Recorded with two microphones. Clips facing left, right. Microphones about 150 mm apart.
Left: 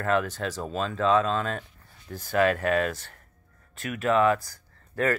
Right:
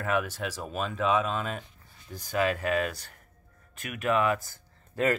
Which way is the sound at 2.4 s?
45° left (ahead or behind).